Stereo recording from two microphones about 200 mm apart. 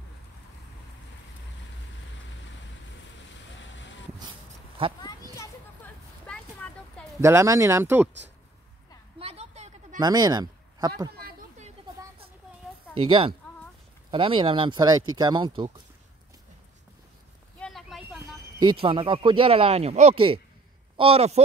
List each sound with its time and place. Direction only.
3.5 s boat: 65° left (ahead or behind)
5.0 s children playing: 15° left (ahead or behind)
6.2 s a sound: 5° left (ahead or behind)
7.2 s speech: 15° right (ahead or behind)
9.2 s a sound: 30° right (ahead or behind)
9.9 s speech: 20° right (ahead or behind)
13.0 s speech: 25° right (ahead or behind)
17.6 s a sound: centre (ahead or behind)
18.6 s speech: 25° right (ahead or behind)